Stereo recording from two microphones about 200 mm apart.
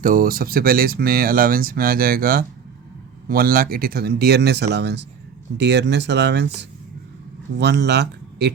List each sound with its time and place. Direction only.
0.0 s speech: 45° right (ahead or behind)